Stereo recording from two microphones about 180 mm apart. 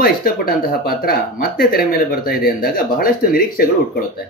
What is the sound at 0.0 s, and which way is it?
Speech, 55° left (ahead or behind).